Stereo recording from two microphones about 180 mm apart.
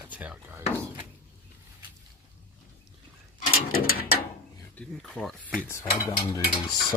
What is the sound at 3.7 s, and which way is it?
Ratchet, 55° left (ahead or behind).